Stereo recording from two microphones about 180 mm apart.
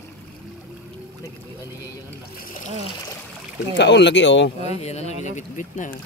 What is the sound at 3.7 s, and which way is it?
Speech, 75° left (ahead or behind).